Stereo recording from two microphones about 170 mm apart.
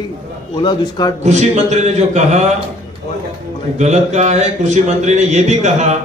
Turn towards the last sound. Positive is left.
turn(degrees=-40)  # may be behind; listen again after turning